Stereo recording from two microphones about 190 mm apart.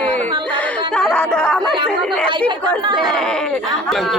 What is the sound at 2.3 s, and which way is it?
Speech, 25° right (ahead or behind).